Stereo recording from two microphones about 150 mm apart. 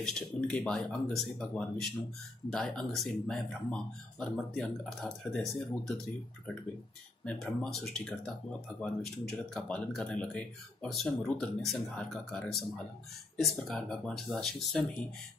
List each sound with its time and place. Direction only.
0.0 s speech: 5° left (ahead or behind)
7.2 s speech: centre (ahead or behind)